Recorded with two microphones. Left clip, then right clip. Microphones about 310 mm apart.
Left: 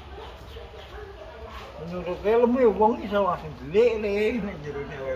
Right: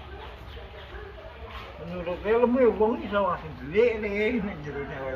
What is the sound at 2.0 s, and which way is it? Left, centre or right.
Speech, left.